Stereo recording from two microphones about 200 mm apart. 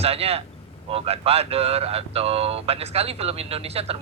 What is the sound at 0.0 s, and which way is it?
Speech, 30° right (ahead or behind).